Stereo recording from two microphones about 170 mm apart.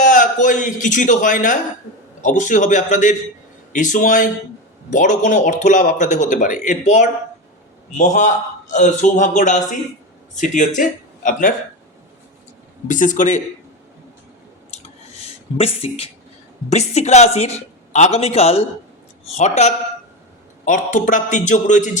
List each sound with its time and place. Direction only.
0.0 s a man's voice: 50° left (ahead or behind)
12.9 s speech: 50° left (ahead or behind)
14.7 s a sound: 35° left (ahead or behind)
16.6 s a woman's voice: 40° left (ahead or behind)